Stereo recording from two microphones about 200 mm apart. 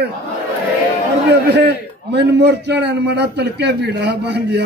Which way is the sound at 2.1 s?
55° right (ahead or behind).